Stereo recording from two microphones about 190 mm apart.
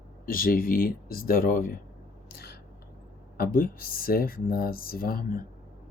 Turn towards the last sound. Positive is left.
turn(degrees=50)  # may be behind; listen again after turning